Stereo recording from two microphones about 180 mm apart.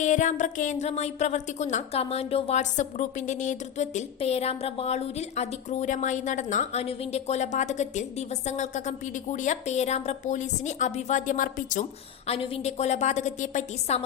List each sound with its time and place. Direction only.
0.0 s a woman's voice: 40° left (ahead or behind)
12.3 s a woman's voice: 35° left (ahead or behind)